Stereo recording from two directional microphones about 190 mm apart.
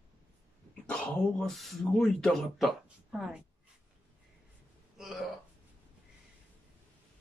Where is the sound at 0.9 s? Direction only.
5° left (ahead or behind).